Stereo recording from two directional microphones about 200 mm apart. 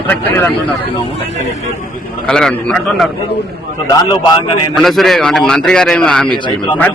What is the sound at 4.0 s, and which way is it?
Speech, 25° left (ahead or behind).